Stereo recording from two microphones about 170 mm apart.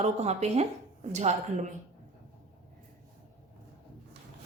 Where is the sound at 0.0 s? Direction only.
40° right (ahead or behind).